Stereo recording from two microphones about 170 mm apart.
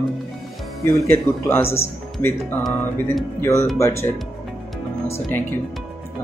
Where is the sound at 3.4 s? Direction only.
15° left (ahead or behind).